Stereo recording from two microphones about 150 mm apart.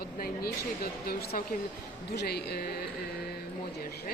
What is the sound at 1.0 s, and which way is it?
A man's voice, 85° left.